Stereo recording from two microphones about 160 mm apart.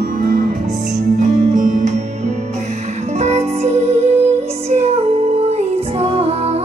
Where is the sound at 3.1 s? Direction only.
45° right (ahead or behind).